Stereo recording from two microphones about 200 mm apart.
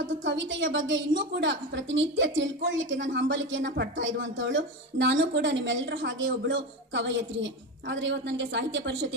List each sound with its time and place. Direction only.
0.0 s a woman's voice: 65° right (ahead or behind)